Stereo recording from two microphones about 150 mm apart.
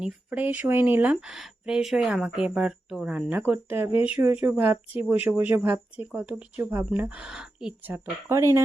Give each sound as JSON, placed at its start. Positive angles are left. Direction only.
{"t": 0.0, "sound": "speech", "side_deg": -10}
{"t": 1.1, "sound": "speech", "side_deg": 0}